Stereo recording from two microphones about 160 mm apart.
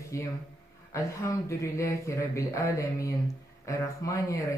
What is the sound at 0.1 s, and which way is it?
Speech, 20° left (ahead or behind).